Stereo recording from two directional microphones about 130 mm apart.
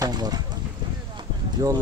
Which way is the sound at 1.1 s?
30° right (ahead or behind).